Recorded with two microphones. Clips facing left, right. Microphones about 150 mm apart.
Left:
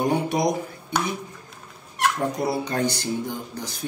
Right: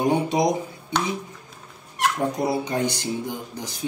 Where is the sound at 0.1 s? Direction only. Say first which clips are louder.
Right 1 dB; 20° right (ahead or behind).